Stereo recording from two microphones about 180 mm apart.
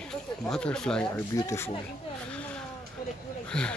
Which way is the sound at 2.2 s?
5° left (ahead or behind).